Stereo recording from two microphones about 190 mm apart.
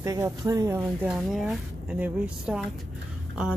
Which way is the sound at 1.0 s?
Centre (ahead or behind).